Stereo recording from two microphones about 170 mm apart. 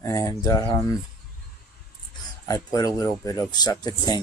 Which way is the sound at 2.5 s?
20° left (ahead or behind).